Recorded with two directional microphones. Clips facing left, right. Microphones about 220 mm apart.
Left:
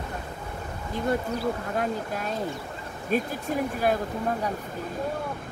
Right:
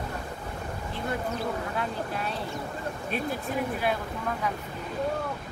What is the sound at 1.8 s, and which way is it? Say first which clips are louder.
Speech: left 3 dB; 45° left (ahead or behind).